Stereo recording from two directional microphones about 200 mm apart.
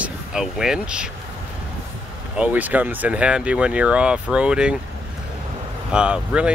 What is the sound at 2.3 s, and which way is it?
Speech, 5° right (ahead or behind).